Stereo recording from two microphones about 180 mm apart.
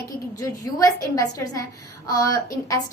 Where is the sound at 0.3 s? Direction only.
20° left (ahead or behind).